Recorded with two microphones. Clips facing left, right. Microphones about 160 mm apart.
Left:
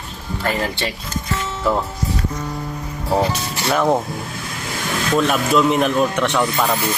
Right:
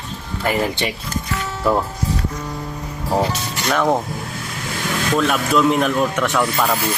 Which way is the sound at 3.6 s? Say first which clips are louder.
Left 1 dB; 5° left (ahead or behind).